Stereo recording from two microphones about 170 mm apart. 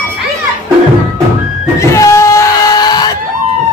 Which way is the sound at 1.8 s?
15° left (ahead or behind).